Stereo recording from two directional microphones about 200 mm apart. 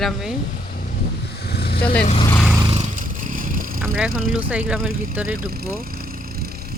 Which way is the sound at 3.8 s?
5° right (ahead or behind).